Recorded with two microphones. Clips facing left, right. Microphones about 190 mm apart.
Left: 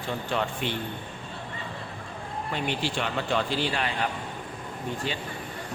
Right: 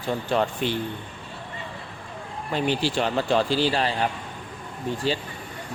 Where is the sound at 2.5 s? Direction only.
35° right (ahead or behind).